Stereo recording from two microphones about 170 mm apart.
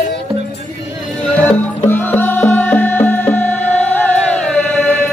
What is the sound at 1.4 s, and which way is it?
Music, 10° left (ahead or behind).